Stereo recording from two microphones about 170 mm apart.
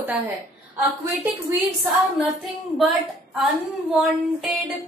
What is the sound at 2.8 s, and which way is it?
A woman's voice, centre (ahead or behind).